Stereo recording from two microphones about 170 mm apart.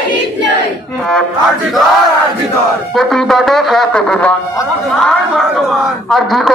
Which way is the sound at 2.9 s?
Centre (ahead or behind).